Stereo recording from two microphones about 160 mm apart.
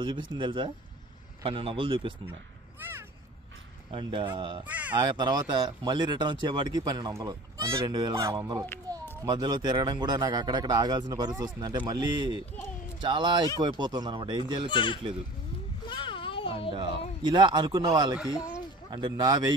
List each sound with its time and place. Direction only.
0.0 s a man's voice: 30° right (ahead or behind)
2.8 s speech: 15° right (ahead or behind)
3.9 s a man's voice: 30° right (ahead or behind)
4.6 s a sound: 10° right (ahead or behind)
4.9 s speech: 25° right (ahead or behind)
8.9 s a sound: 25° right (ahead or behind)
9.2 s speech: 25° right (ahead or behind)
14.7 s speech: 30° left (ahead or behind)
15.9 s a sound: 30° left (ahead or behind)
16.7 s speech: 30° right (ahead or behind)